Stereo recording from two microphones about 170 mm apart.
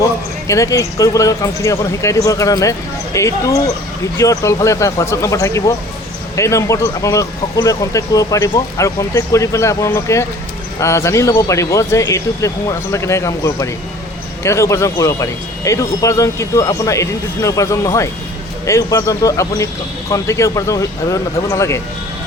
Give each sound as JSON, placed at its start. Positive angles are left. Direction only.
{"t": 0.0, "sound": "a man's voice", "side_deg": 20}